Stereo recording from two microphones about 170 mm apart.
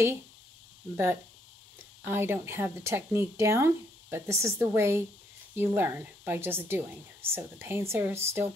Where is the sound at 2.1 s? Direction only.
15° right (ahead or behind).